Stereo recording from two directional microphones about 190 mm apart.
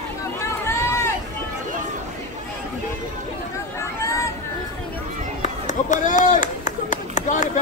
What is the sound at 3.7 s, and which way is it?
Chatter, 15° left (ahead or behind).